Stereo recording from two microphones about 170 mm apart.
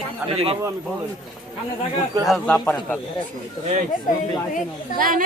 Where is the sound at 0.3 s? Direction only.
35° right (ahead or behind).